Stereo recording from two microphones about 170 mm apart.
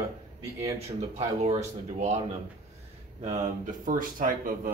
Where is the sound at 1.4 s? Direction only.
40° right (ahead or behind).